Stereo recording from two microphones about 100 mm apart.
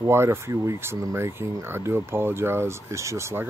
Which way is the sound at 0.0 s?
25° right (ahead or behind).